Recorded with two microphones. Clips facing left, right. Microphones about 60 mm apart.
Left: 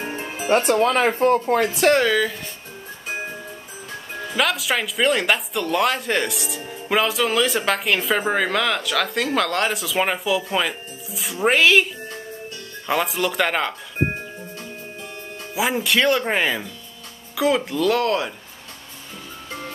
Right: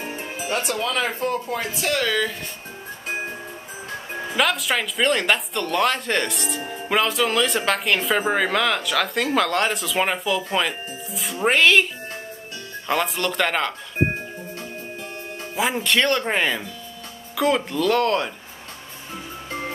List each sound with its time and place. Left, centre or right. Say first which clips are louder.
0.0 s music: left 2 dB; centre
0.5 s speech: left 8 dB; left
2.0 s speech: left 3 dB; centre
4.4 s speech: even; centre
15.5 s speech: left 1 dB; centre